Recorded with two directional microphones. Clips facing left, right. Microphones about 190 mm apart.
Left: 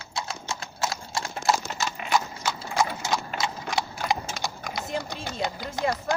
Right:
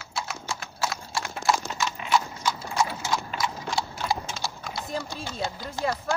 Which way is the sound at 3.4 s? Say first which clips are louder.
Even; 20° left (ahead or behind).